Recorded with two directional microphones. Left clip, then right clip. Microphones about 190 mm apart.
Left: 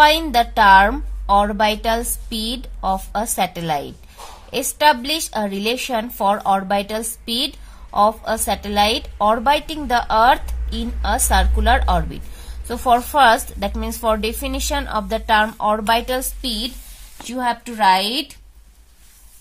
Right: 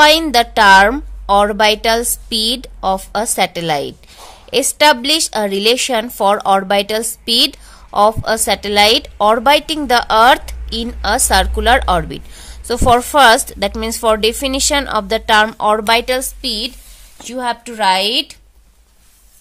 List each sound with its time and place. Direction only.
0.0 s a woman's voice: 40° right (ahead or behind)